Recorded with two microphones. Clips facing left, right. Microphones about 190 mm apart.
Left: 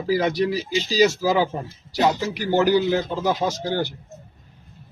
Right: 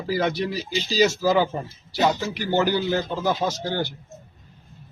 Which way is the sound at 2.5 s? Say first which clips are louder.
Left 4 dB; 15° left (ahead or behind).